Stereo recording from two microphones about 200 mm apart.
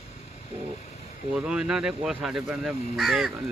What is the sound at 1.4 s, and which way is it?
Speech, 5° right (ahead or behind).